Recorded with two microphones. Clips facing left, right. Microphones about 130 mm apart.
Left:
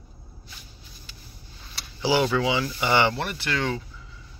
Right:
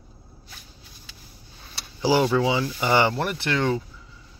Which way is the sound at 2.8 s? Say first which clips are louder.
Right 2 dB; 35° right (ahead or behind).